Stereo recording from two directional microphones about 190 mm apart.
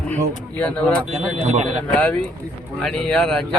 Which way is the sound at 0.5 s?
5° left (ahead or behind).